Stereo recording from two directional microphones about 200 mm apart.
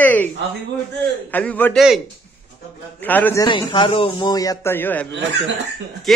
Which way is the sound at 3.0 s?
10° left (ahead or behind).